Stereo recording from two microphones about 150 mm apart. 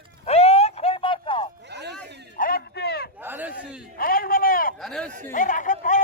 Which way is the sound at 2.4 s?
85° left.